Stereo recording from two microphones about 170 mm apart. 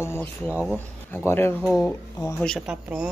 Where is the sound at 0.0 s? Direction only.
15° left (ahead or behind).